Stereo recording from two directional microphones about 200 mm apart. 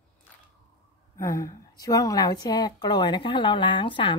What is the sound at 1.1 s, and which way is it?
Speech, 15° left (ahead or behind).